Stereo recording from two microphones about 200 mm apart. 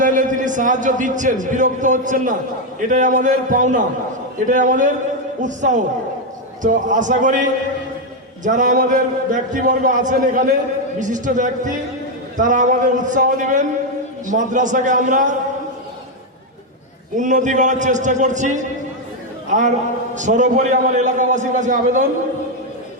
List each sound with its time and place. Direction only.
0.0 s a man's voice: 40° right (ahead or behind)
17.2 s a man's voice: 40° right (ahead or behind)